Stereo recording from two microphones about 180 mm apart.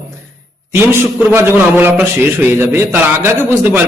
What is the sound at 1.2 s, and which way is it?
A man's voice, 10° right (ahead or behind).